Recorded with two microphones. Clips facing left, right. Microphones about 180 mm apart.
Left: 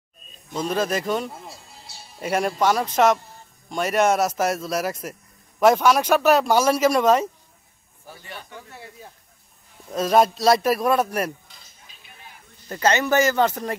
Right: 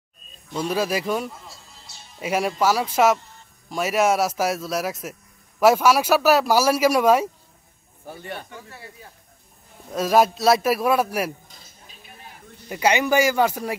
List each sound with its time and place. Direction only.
0.6 s speech: 10° right (ahead or behind)
8.2 s a man's voice: 55° right (ahead or behind)
9.9 s speech: 5° right (ahead or behind)
12.6 s speech: 10° right (ahead or behind)